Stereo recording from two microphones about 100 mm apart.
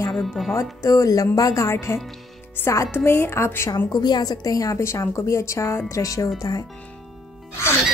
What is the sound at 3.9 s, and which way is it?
A woman's voice, 45° left (ahead or behind).